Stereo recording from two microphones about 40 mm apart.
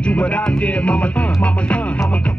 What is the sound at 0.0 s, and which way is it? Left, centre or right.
Music, left.